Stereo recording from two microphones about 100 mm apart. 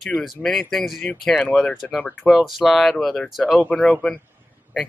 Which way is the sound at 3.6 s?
10° left (ahead or behind).